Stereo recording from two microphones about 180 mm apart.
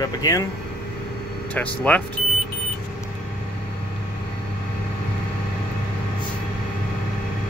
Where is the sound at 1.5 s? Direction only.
10° left (ahead or behind).